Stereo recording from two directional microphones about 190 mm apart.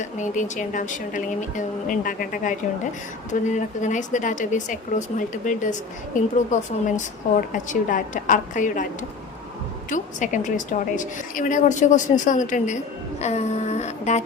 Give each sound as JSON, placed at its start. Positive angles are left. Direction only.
{"t": 0.0, "sound": "a woman's voice", "side_deg": 40}
{"t": 9.9, "sound": "a woman's voice", "side_deg": 40}